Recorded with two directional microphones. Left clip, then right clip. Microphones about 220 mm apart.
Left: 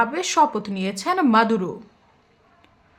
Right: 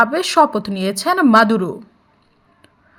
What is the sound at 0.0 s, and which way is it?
A woman's voice, 20° right (ahead or behind).